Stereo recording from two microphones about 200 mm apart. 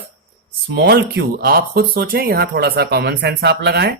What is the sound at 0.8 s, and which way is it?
Speech, 55° right (ahead or behind).